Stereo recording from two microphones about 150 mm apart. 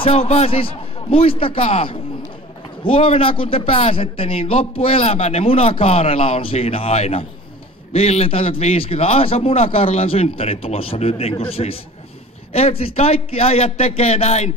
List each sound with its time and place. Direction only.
0.0 s a man's voice: 40° left (ahead or behind)